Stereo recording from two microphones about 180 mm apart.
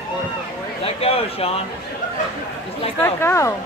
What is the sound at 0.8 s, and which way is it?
Speech, 35° left (ahead or behind).